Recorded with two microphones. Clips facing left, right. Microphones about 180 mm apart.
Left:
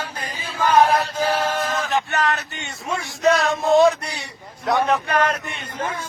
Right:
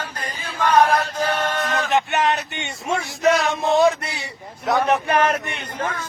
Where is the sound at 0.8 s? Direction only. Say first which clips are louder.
Left 1 dB; 5° left (ahead or behind).